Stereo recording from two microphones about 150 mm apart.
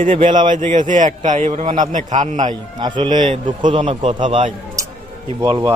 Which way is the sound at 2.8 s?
30° right (ahead or behind).